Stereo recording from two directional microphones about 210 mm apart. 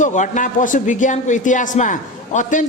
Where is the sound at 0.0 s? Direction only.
35° left (ahead or behind).